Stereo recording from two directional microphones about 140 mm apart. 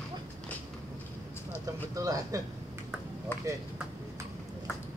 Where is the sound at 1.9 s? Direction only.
25° right (ahead or behind).